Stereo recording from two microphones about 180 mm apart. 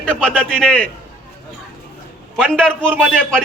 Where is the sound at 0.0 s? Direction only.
5° left (ahead or behind).